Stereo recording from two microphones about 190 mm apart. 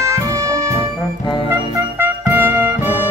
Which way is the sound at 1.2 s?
25° left (ahead or behind).